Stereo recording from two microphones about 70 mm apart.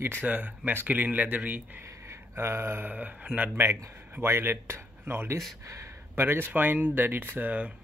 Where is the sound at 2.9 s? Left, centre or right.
Right.